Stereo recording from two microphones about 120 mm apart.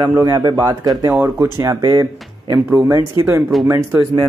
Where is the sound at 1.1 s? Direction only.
15° right (ahead or behind).